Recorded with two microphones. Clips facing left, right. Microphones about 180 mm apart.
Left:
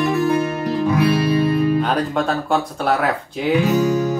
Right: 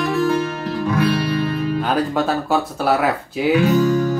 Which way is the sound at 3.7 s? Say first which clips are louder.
Right 1 dB; 15° left (ahead or behind).